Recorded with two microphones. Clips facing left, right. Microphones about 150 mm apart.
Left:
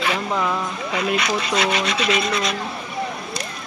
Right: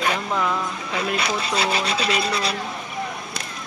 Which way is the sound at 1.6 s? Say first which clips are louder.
Left 1 dB; 30° right (ahead or behind).